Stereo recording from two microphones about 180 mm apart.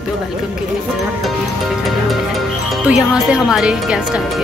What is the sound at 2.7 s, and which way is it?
Speech, 5° right (ahead or behind).